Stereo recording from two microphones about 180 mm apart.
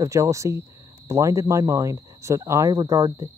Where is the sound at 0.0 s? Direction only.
15° right (ahead or behind).